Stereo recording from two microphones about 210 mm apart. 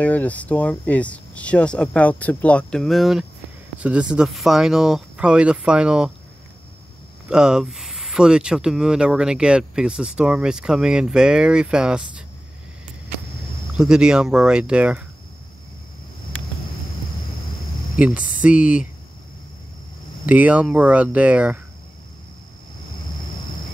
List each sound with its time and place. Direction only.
0.0 s speech: 5° left (ahead or behind)
7.2 s speech: 5° right (ahead or behind)
13.7 s speech: 5° right (ahead or behind)
17.9 s speech: 5° right (ahead or behind)
20.2 s speech: 5° right (ahead or behind)